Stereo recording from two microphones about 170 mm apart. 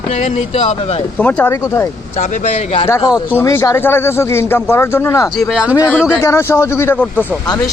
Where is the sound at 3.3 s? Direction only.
15° left (ahead or behind).